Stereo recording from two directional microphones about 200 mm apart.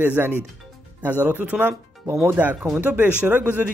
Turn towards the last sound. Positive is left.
turn(degrees=-10)  # may be behind; listen again after turning